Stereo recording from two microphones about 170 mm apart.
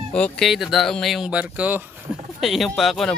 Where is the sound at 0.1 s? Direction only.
5° left (ahead or behind).